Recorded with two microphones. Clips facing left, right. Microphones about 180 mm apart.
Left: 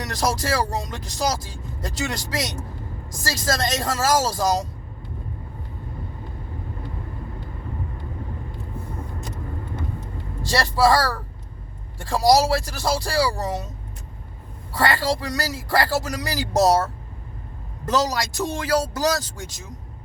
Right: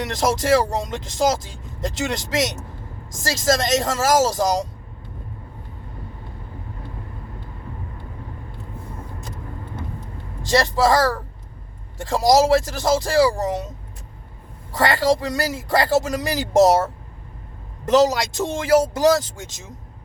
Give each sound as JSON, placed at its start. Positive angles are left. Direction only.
{"t": 0.0, "sound": "speech", "side_deg": -25}
{"t": 10.4, "sound": "speech", "side_deg": -20}
{"t": 14.7, "sound": "speech", "side_deg": -20}